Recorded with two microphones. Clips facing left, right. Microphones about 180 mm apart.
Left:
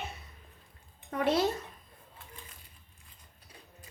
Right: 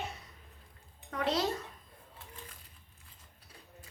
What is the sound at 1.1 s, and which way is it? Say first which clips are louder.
Speech: left 4 dB; 25° left (ahead or behind).